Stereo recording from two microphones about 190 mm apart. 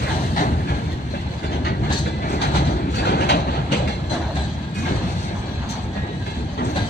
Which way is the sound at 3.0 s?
60° left (ahead or behind).